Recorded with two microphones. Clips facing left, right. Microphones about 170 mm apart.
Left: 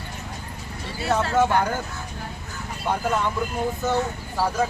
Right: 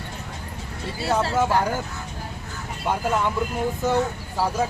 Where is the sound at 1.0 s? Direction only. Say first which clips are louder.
Left 1 dB; 30° right (ahead or behind).